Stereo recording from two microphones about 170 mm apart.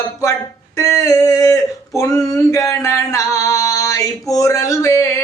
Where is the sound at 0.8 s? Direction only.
20° left (ahead or behind).